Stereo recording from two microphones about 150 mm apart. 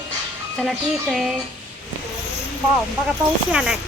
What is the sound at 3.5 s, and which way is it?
Speech, 5° right (ahead or behind).